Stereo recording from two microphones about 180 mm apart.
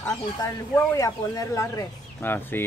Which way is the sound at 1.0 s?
20° left (ahead or behind).